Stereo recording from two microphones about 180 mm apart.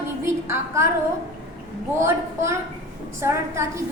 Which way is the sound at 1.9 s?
15° right (ahead or behind).